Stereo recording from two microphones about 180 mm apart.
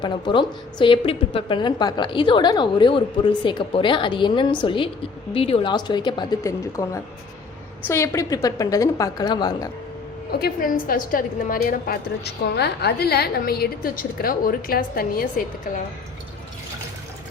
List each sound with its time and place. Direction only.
0.0 s a woman's voice: 25° left (ahead or behind)
10.3 s a woman's voice: 55° left (ahead or behind)